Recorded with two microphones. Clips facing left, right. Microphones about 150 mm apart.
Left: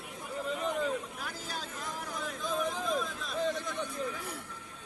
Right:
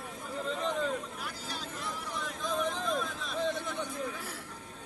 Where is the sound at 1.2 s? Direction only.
45° left (ahead or behind).